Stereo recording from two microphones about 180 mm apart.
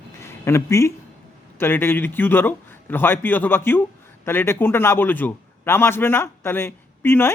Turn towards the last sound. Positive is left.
turn(degrees=10)  # may be behind; listen again after turning